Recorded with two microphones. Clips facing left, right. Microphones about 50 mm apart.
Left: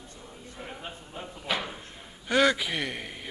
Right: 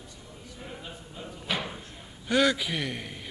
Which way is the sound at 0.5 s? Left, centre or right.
Left.